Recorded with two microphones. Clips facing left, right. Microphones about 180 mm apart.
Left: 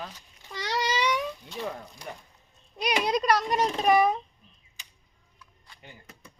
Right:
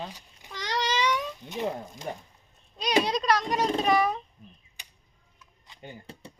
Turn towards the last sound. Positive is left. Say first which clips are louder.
# right 7 dB
turn(degrees=-30)  # may be behind; listen again after turning